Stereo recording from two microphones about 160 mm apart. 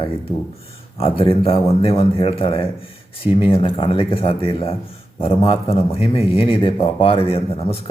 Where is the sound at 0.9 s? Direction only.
35° left (ahead or behind).